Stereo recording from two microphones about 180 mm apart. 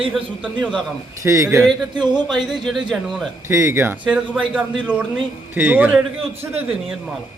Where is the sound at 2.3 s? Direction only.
Centre (ahead or behind).